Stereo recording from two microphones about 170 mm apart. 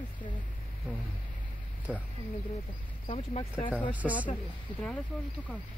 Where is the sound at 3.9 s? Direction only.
10° right (ahead or behind).